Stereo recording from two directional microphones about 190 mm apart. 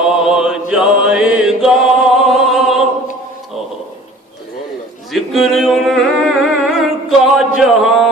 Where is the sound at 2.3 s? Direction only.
Centre (ahead or behind).